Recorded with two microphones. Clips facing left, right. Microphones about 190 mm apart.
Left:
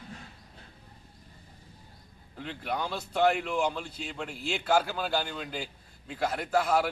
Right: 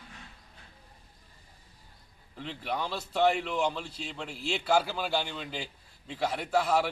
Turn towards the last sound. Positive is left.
turn(degrees=0)  # may be behind; listen again after turning